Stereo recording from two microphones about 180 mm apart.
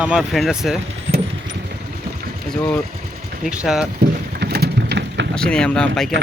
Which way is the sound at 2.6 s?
10° left (ahead or behind).